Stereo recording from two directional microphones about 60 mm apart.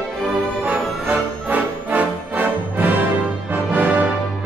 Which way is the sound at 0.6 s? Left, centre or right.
Right.